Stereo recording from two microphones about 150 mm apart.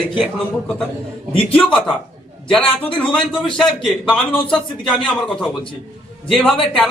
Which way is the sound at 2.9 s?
10° left (ahead or behind).